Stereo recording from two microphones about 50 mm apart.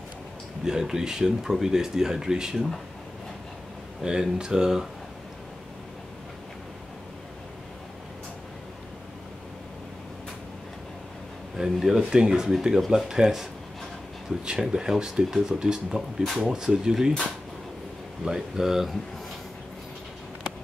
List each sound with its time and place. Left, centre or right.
0.7 s speech: centre
4.0 s speech: centre
11.5 s speech: centre
18.2 s speech: centre